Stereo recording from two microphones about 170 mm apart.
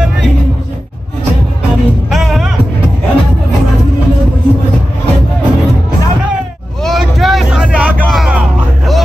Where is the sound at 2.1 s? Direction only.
Centre (ahead or behind).